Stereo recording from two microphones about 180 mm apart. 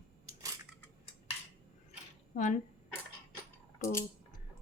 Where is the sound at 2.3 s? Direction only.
40° left (ahead or behind).